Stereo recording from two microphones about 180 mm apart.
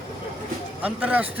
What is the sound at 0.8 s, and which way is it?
Speech, 10° right (ahead or behind).